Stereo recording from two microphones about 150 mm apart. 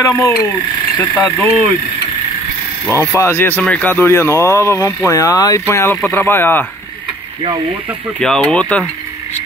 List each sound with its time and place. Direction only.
0.0 s speech: 20° left (ahead or behind)
2.9 s speech: 15° right (ahead or behind)
3.2 s speech: 15° left (ahead or behind)
8.2 s speech: 5° left (ahead or behind)